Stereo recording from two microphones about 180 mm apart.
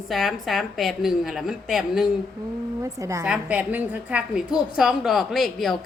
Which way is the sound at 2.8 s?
15° right (ahead or behind).